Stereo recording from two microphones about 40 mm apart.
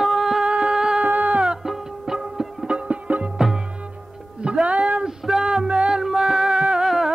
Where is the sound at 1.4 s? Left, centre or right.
Centre.